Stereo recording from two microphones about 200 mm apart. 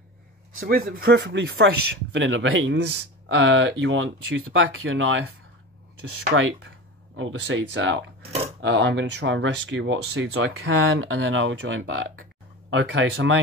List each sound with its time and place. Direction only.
0.6 s speech: 45° right (ahead or behind); by 5.2 s 80° right
6.3 s speech: 80° right
7.2 s speech: 70° right (ahead or behind)